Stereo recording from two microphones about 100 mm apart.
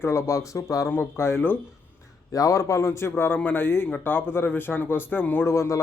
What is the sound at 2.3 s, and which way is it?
Speech, 35° left (ahead or behind).